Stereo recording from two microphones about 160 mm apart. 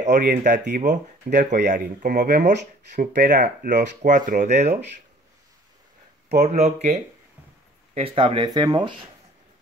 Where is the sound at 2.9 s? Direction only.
55° right (ahead or behind).